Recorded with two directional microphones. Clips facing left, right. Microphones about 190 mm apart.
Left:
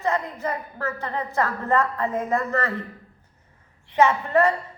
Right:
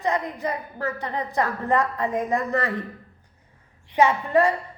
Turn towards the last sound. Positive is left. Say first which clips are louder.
# even
turn(degrees=-15)  # may be behind; listen again after turning